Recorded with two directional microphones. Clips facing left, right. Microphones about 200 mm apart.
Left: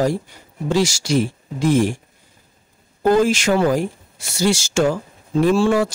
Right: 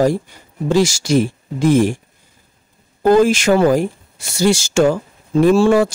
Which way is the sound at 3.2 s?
55° right (ahead or behind).